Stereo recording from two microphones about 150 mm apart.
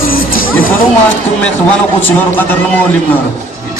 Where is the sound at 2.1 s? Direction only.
15° left (ahead or behind).